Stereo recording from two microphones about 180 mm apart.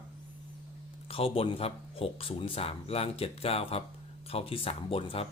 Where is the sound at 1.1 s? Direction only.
30° left (ahead or behind).